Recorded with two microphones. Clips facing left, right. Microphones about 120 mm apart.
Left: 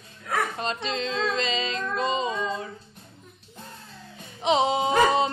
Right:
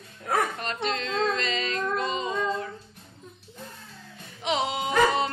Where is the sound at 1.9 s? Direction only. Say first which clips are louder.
Left 6 dB; 20° left (ahead or behind).